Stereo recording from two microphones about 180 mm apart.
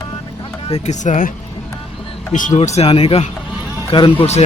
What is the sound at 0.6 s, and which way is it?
Speech, 35° left (ahead or behind).